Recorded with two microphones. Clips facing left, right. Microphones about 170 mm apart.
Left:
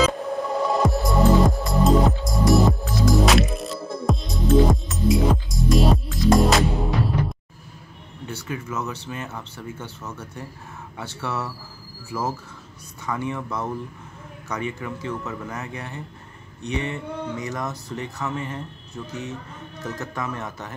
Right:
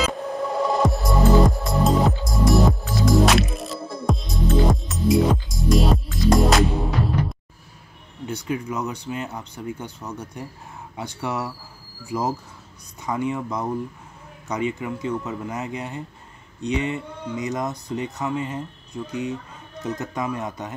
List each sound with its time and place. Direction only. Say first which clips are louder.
0.5 s music: right 1 dB; centre (ahead or behind)
8.3 s speech: right 4 dB; 15° right (ahead or behind)